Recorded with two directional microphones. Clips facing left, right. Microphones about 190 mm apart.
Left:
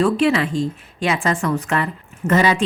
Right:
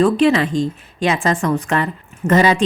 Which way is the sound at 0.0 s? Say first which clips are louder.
Right 3 dB; 35° right (ahead or behind).